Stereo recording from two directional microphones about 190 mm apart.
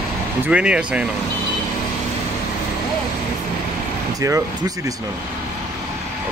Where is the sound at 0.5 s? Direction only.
5° right (ahead or behind).